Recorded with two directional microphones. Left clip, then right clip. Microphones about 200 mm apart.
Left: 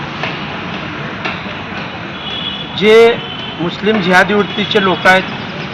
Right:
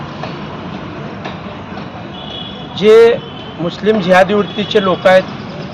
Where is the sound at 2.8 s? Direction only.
35° right (ahead or behind).